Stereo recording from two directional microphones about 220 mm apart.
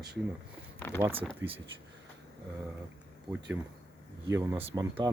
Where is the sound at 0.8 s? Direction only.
10° left (ahead or behind).